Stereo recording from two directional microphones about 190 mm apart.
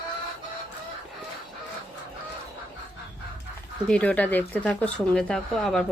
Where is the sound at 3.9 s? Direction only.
5° left (ahead or behind).